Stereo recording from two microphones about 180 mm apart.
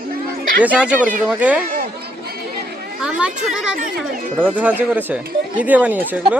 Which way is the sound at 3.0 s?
5° right (ahead or behind).